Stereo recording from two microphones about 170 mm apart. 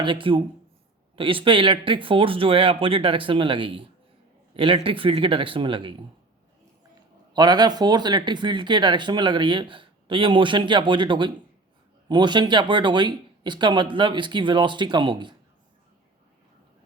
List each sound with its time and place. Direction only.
0.0 s speech: 30° right (ahead or behind)
7.3 s speech: 25° right (ahead or behind)